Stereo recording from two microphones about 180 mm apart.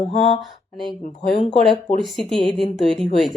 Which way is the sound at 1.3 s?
35° left (ahead or behind).